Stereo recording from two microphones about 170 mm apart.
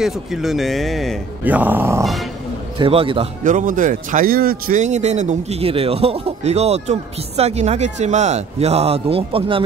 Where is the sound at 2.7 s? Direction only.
30° right (ahead or behind).